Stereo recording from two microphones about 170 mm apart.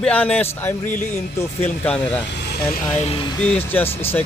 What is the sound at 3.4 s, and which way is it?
Speech, 10° left (ahead or behind).